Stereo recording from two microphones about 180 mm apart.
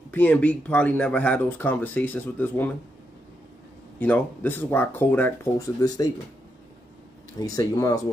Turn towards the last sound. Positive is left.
turn(degrees=20)  # may be behind; listen again after turning